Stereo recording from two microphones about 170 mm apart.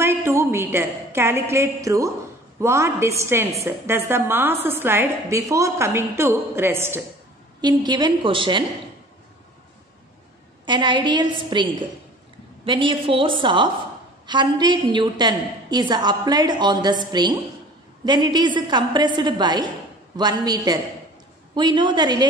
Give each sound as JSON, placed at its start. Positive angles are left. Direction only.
{"t": 0.0, "sound": "a woman's voice", "side_deg": -15}
{"t": 7.6, "sound": "a woman's voice", "side_deg": -25}
{"t": 10.6, "sound": "a woman's voice", "side_deg": -25}